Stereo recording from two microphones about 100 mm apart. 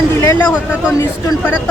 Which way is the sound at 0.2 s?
30° left (ahead or behind).